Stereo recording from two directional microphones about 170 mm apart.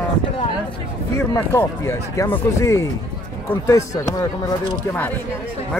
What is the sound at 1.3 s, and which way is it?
Speech, 15° left (ahead or behind).